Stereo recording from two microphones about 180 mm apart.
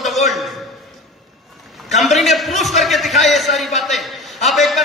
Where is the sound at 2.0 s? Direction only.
Centre (ahead or behind).